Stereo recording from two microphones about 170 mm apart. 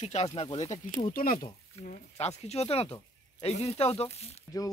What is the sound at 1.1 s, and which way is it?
Speech, 55° left (ahead or behind).